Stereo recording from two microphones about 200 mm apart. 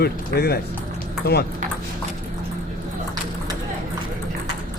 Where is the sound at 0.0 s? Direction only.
50° left (ahead or behind).